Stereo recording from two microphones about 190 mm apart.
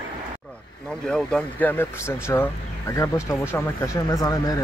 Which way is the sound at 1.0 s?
5° left (ahead or behind).